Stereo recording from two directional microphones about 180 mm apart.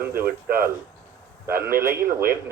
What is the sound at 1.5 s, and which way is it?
Speech, 55° right (ahead or behind).